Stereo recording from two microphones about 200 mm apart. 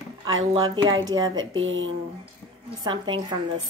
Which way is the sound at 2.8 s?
20° right (ahead or behind).